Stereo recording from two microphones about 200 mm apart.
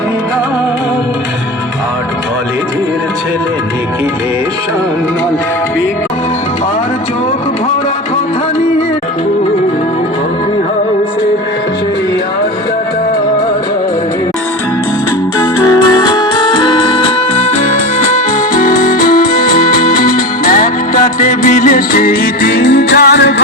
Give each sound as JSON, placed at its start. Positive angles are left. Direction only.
{"t": 15.6, "sound": "music", "side_deg": 15}